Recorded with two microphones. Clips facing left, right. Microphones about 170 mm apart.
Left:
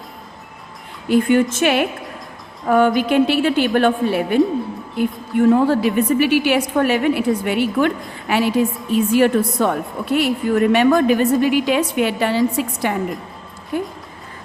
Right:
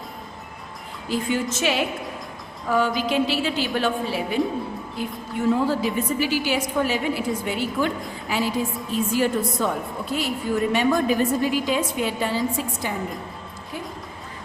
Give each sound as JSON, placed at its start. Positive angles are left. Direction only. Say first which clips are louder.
{"t": 1.0, "sound": "a woman's voice", "louder": "left 10 dB", "side_deg": 60}
{"t": 13.7, "sound": "a woman's voice", "louder": "left 11 dB", "side_deg": 55}